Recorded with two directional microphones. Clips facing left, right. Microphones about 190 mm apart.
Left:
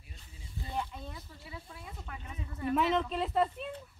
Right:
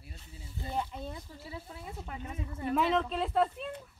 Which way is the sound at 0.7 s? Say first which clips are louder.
Right 3 dB; 25° right (ahead or behind).